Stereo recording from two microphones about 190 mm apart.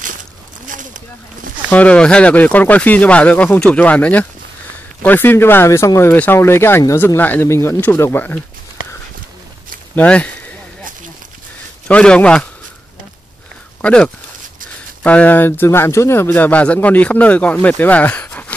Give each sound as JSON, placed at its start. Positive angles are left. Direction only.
{"t": 0.7, "sound": "a sound", "side_deg": -45}
{"t": 1.7, "sound": "speech", "side_deg": 5}
{"t": 9.9, "sound": "speech", "side_deg": 5}
{"t": 11.9, "sound": "a man's voice", "side_deg": 5}
{"t": 13.7, "sound": "speech", "side_deg": 5}